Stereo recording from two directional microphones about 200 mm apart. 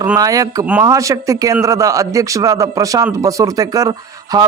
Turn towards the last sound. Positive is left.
turn(degrees=-20)  # may be behind; listen again after turning